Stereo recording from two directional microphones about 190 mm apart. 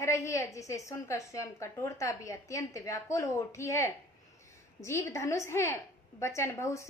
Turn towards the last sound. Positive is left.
turn(degrees=15)  # may be behind; listen again after turning